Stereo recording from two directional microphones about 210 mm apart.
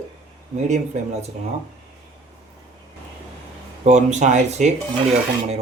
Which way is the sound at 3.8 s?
35° right (ahead or behind).